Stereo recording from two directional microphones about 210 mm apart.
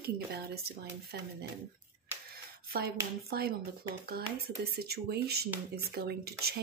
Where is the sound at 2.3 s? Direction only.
45° right (ahead or behind).